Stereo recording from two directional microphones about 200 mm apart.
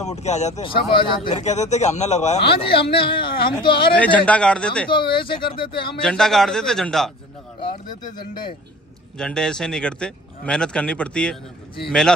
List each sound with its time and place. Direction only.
0.0 s speech: 35° left (ahead or behind)
3.9 s speech: 5° left (ahead or behind)
4.9 s speech: 25° left (ahead or behind)
5.9 s speech: 5° left (ahead or behind)
9.2 s speech: 5° left (ahead or behind)